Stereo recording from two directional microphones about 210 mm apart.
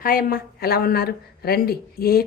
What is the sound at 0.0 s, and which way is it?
A woman's voice, 45° left (ahead or behind).